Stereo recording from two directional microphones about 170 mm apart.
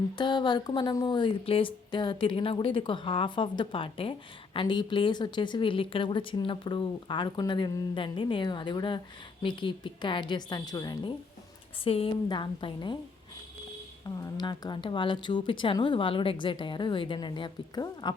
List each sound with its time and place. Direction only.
0.2 s speech: 25° left (ahead or behind)
11.8 s speech: 35° left (ahead or behind)
14.3 s speech: 25° left (ahead or behind)